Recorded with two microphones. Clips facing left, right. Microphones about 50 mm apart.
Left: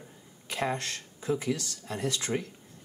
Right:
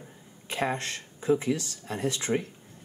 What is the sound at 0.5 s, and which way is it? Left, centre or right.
Speech, right.